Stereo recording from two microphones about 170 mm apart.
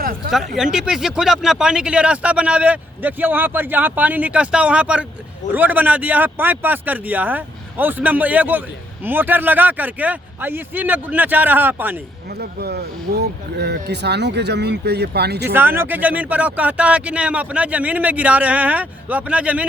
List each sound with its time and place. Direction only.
0.3 s speech: centre (ahead or behind)
12.4 s speech: 70° right (ahead or behind)
15.4 s speech: 15° right (ahead or behind)